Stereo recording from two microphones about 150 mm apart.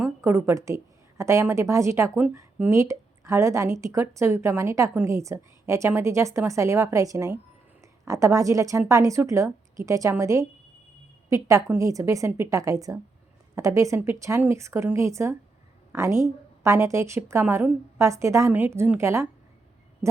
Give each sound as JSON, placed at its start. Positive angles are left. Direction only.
{"t": 0.2, "sound": "speech", "side_deg": -15}